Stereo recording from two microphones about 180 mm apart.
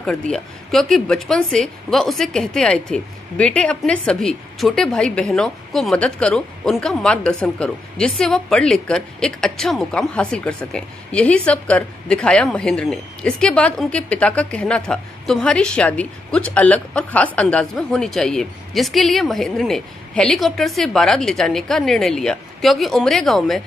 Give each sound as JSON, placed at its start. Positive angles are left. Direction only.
{"t": 0.0, "sound": "a woman's voice", "side_deg": 5}